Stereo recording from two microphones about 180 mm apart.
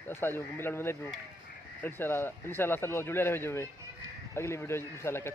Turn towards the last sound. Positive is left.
turn(degrees=15)  # may be behind; listen again after turning